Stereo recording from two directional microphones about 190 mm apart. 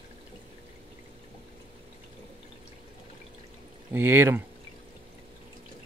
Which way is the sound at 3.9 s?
10° right (ahead or behind).